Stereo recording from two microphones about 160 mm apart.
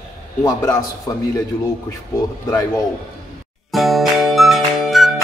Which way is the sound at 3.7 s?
Centre (ahead or behind).